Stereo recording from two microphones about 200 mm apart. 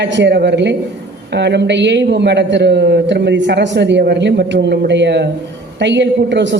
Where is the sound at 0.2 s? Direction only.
60° right (ahead or behind).